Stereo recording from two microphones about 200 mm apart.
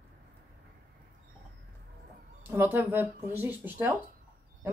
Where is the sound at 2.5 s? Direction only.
10° right (ahead or behind).